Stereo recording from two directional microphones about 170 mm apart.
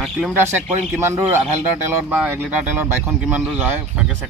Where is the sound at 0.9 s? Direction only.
15° right (ahead or behind).